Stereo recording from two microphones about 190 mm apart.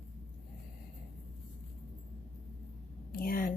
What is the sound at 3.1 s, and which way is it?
Speech, 50° left (ahead or behind).